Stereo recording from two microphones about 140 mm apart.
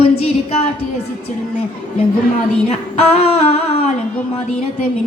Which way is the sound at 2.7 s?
50° left (ahead or behind).